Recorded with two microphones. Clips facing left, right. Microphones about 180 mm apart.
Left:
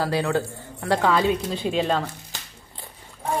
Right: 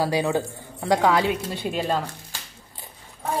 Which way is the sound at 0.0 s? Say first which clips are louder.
Right 1 dB; 15° right (ahead or behind).